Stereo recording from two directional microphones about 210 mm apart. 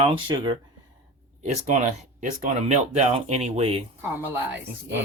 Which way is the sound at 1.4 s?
35° right (ahead or behind).